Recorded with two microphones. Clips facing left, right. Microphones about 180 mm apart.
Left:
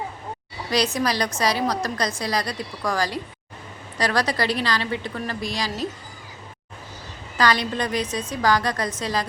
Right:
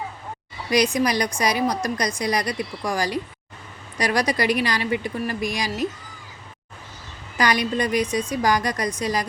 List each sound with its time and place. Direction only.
0.9 s speech: 15° right (ahead or behind)
7.3 s speech: 15° right (ahead or behind)